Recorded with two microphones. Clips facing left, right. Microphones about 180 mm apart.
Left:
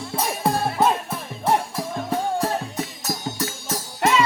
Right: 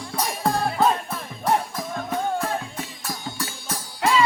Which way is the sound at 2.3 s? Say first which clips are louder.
Left 3 dB; 40° left (ahead or behind).